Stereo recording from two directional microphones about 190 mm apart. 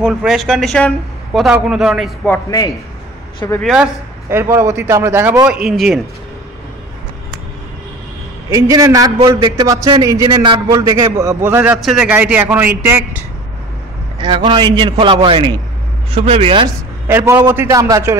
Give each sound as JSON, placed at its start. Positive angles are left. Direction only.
{"t": 0.0, "sound": "speech", "side_deg": 0}
{"t": 3.3, "sound": "speech", "side_deg": 15}
{"t": 3.6, "sound": "a man's voice", "side_deg": -5}
{"t": 8.5, "sound": "a man's voice", "side_deg": -15}
{"t": 14.2, "sound": "a man's voice", "side_deg": -25}
{"t": 17.1, "sound": "a man's voice", "side_deg": -15}